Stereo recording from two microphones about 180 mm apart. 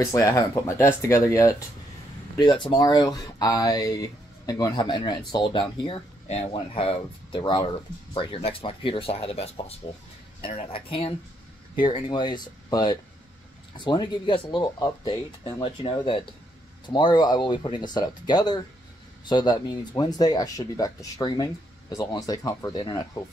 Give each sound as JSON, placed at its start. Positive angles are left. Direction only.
{"t": 0.0, "sound": "speech", "side_deg": 15}